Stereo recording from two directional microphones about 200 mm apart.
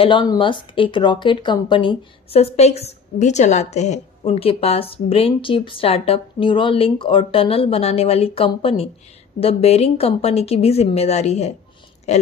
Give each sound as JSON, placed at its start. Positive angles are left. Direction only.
{"t": 0.0, "sound": "speech", "side_deg": 25}